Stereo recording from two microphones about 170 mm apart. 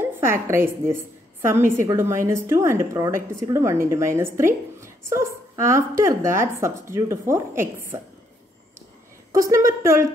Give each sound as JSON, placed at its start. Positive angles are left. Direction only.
{"t": 0.0, "sound": "a woman's voice", "side_deg": -15}
{"t": 9.3, "sound": "a woman's voice", "side_deg": -20}